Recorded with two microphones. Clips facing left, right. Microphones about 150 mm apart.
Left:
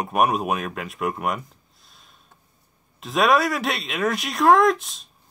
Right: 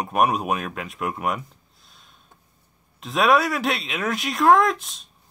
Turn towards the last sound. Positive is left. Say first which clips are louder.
# left 2 dB
turn(degrees=0)  # may be behind; listen again after turning